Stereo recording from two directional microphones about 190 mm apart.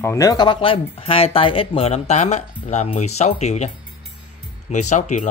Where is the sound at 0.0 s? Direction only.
15° left (ahead or behind).